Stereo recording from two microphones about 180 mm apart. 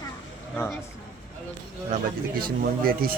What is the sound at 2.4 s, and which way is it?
Speech, 55° right (ahead or behind).